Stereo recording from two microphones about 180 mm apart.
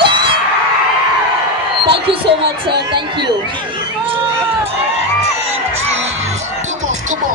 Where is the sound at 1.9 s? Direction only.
30° right (ahead or behind).